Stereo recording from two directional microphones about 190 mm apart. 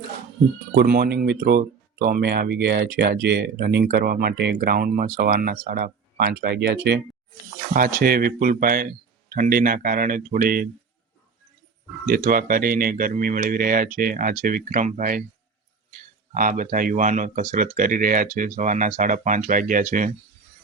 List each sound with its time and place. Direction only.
0.8 s speech: 55° right (ahead or behind)
7.7 s speech: 50° right (ahead or behind)
12.0 s speech: 50° right (ahead or behind)